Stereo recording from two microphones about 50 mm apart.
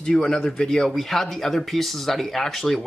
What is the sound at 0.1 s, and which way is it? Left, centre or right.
Speech, centre.